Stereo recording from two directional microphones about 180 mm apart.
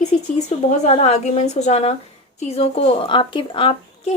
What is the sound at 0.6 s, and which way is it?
A woman's voice, 40° left (ahead or behind).